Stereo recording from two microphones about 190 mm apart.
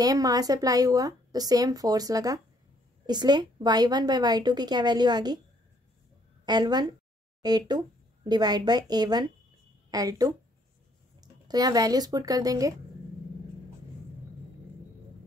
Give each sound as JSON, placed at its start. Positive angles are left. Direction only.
{"t": 0.0, "sound": "speech", "side_deg": -20}
{"t": 6.4, "sound": "a woman's voice", "side_deg": -20}